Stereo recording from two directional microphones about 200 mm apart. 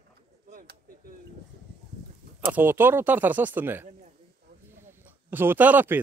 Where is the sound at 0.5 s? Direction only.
45° right (ahead or behind).